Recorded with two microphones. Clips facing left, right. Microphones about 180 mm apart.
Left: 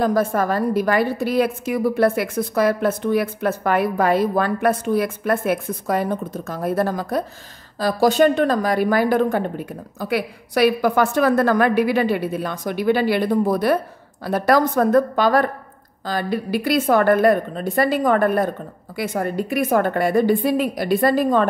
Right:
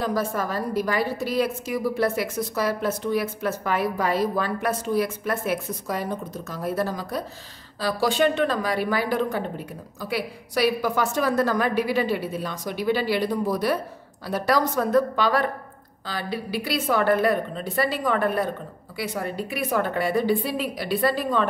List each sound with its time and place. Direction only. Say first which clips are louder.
0.0 s a woman's voice: left 7 dB; 50° left (ahead or behind)